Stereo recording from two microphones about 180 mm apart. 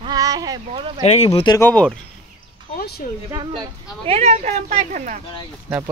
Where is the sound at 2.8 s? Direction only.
60° left (ahead or behind).